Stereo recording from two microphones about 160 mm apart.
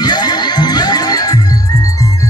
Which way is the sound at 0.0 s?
25° left (ahead or behind).